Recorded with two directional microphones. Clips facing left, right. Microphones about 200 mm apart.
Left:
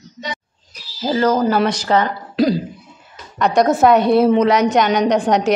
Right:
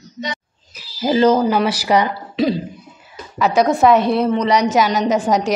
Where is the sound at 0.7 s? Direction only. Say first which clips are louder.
Right 3 dB; 15° right (ahead or behind).